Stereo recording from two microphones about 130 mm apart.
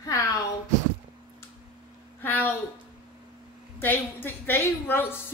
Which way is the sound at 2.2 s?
15° left (ahead or behind).